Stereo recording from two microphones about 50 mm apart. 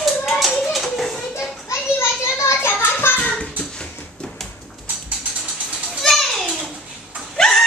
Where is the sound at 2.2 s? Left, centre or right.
Left.